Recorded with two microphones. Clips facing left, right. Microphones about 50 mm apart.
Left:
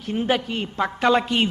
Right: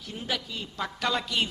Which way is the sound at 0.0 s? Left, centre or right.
Left.